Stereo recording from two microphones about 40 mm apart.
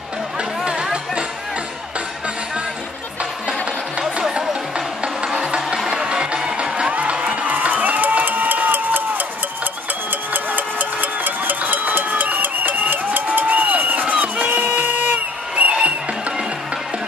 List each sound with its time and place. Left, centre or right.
4.4 s music: centre; by 7.3 s right
7.4 s music: right
10.3 s a sound: right
15.7 s music: right